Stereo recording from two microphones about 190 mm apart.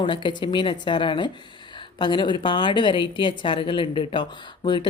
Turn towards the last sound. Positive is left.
turn(degrees=25)  # may be behind; listen again after turning